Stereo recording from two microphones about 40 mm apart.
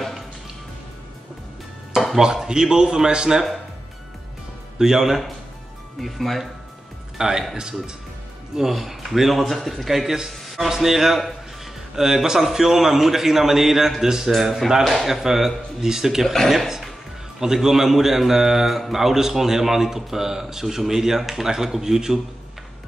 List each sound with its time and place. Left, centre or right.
2.1 s a man's voice: centre
4.7 s a man's voice: centre
7.2 s speech: centre
8.5 s a man's voice: centre
10.4 s a sound: centre
10.7 s a man's voice: centre
14.3 s a man's voice: centre